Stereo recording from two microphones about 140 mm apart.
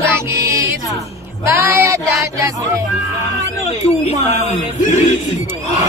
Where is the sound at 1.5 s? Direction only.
20° right (ahead or behind).